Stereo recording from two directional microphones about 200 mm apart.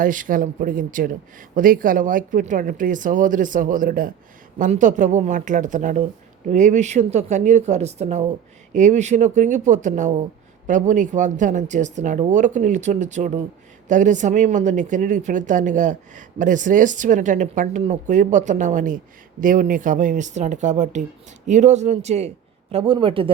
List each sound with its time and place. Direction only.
0.0 s a man's voice: 40° right (ahead or behind); by 23.3 s 25° right (ahead or behind)